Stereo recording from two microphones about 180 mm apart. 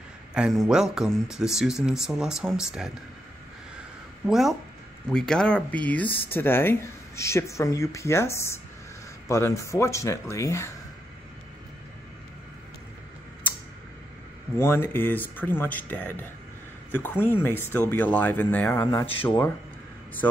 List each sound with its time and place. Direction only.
0.3 s speech: centre (ahead or behind)
4.3 s speech: centre (ahead or behind); by 10.7 s 15° left (ahead or behind)
14.6 s speech: 15° left (ahead or behind)